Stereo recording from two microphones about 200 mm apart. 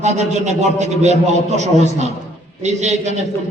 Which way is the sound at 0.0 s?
35° right (ahead or behind).